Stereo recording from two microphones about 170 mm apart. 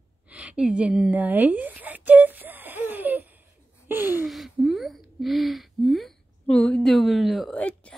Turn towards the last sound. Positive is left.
turn(degrees=5)  # may be behind; listen again after turning